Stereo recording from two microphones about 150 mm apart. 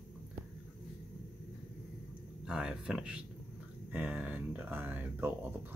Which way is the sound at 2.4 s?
5° right (ahead or behind).